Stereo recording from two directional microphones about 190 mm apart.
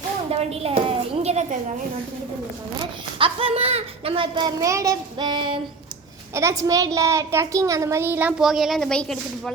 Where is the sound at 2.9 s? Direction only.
30° right (ahead or behind); by 9.5 s 5° left (ahead or behind).